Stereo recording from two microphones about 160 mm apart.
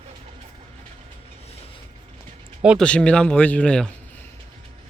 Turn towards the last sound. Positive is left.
turn(degrees=5)  # may be behind; listen again after turning